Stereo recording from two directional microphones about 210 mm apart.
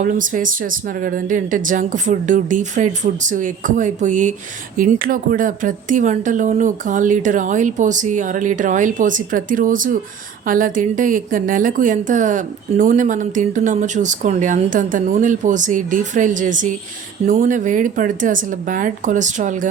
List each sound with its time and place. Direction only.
0.0 s a woman's voice: 40° right (ahead or behind)